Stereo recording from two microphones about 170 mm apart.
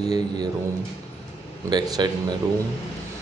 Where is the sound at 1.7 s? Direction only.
25° right (ahead or behind).